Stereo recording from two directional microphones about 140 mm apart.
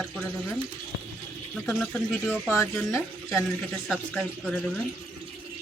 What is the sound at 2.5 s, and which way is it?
Speech, 20° left (ahead or behind).